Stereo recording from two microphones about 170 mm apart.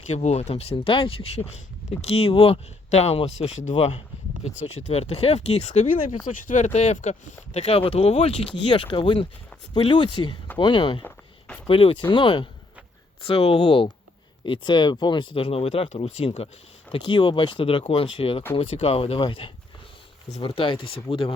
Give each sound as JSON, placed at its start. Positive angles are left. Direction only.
{"t": 0.1, "sound": "speech", "side_deg": 40}
{"t": 11.0, "sound": "a sound", "side_deg": 10}
{"t": 11.7, "sound": "speech", "side_deg": 30}